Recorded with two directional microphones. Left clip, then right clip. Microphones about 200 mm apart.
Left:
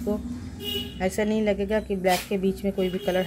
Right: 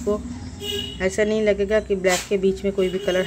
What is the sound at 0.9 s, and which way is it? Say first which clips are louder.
Speech: right 6 dB; centre (ahead or behind).